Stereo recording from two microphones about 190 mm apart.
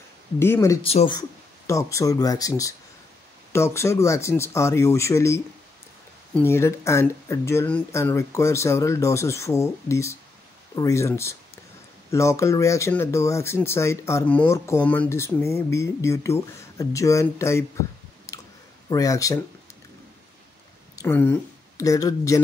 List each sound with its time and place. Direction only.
0.4 s speech: 15° left (ahead or behind)
0.8 s speech: 30° left (ahead or behind)
1.7 s speech: 15° left (ahead or behind)
18.3 s clicking: 15° left (ahead or behind)
18.9 s speech: 20° left (ahead or behind)
21.0 s speech: 10° left (ahead or behind)